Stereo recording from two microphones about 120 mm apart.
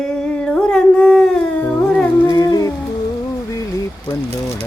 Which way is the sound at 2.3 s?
30° left (ahead or behind).